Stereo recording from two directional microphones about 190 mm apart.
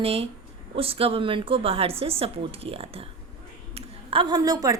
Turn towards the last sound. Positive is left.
turn(degrees=-20)  # may be behind; listen again after turning